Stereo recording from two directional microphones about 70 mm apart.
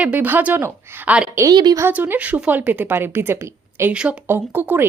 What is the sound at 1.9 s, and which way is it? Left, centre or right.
A woman's voice, right.